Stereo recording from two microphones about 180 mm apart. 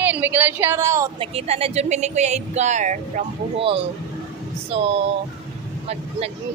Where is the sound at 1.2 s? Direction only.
35° right (ahead or behind).